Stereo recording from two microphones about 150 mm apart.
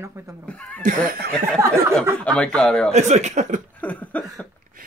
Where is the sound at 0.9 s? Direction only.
80° right.